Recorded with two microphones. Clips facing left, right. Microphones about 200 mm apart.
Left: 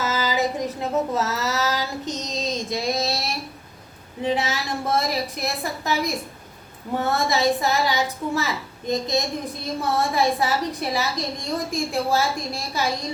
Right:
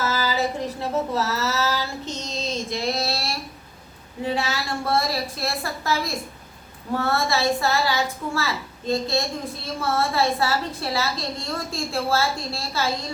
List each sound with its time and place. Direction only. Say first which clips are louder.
0.0 s child singing: left 1 dB; 20° left (ahead or behind)
4.2 s a woman's voice: left 2 dB; 20° left (ahead or behind)